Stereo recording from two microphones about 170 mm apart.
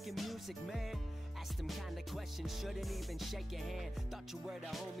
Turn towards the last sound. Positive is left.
turn(degrees=0)  # may be behind; listen again after turning